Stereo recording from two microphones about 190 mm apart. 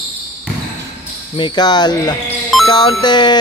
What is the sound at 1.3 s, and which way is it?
A man's voice, 25° left (ahead or behind).